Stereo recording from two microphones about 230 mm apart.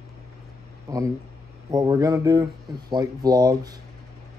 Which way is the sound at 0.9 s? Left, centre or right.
Centre.